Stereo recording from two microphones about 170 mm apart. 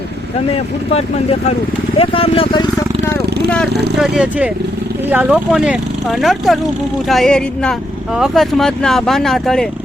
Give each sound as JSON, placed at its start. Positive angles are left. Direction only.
{"t": 0.5, "sound": "speech", "side_deg": 35}
{"t": 3.9, "sound": "speech", "side_deg": -5}